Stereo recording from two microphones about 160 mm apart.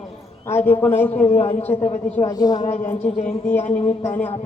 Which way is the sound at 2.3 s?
25° left (ahead or behind).